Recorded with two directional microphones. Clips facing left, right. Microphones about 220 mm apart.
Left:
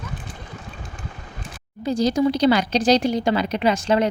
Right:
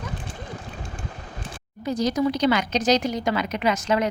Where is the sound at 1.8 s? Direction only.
30° left (ahead or behind).